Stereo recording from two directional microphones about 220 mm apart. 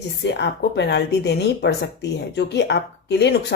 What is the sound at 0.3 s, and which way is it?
Speech, 50° left (ahead or behind).